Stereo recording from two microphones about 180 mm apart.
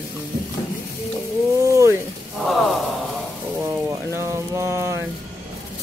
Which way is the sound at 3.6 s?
15° right (ahead or behind).